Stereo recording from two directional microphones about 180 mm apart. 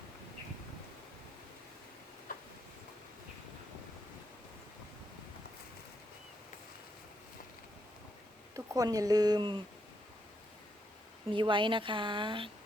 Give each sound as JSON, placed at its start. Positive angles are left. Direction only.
{"t": 8.5, "sound": "speech", "side_deg": -20}
{"t": 11.3, "sound": "speech", "side_deg": -25}